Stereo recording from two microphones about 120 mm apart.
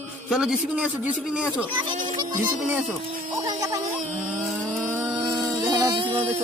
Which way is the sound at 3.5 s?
30° right (ahead or behind).